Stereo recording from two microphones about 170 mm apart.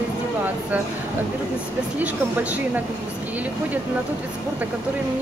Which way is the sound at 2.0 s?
10° right (ahead or behind).